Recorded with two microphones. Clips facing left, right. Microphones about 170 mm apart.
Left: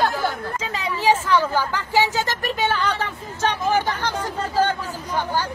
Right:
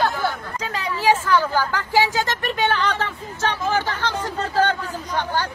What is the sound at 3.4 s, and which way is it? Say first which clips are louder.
Speech: left 2 dB; 15° left (ahead or behind).